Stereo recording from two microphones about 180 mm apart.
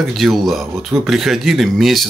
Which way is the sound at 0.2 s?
Centre (ahead or behind).